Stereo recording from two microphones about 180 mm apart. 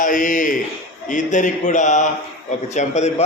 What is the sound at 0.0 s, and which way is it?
A man's voice, 45° left (ahead or behind).